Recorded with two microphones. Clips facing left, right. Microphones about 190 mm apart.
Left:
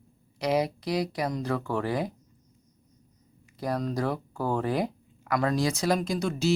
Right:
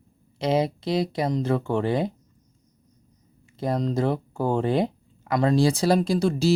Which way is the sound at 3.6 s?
25° right (ahead or behind).